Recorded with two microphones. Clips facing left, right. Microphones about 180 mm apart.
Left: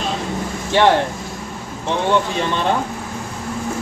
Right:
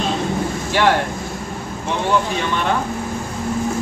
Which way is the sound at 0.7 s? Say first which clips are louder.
Left 3 dB; 25° left (ahead or behind).